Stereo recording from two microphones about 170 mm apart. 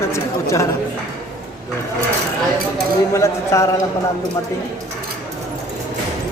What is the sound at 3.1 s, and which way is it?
Speech, 15° left (ahead or behind).